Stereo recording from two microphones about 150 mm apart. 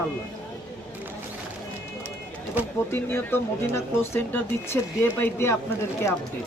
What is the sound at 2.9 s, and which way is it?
Speech, 15° left (ahead or behind).